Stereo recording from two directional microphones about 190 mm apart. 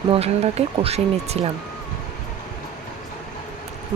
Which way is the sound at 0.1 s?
30° right (ahead or behind).